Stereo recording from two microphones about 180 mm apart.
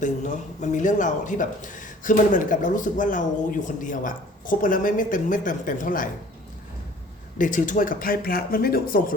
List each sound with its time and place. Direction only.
0.0 s speech: 40° left (ahead or behind)
7.3 s speech: 45° left (ahead or behind)